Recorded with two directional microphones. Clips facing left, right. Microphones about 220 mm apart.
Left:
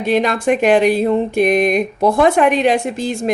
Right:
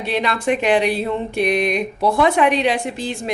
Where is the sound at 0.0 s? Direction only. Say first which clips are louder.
Left 5 dB; 45° left (ahead or behind).